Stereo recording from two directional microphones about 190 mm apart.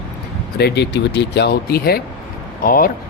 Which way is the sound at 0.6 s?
65° left (ahead or behind).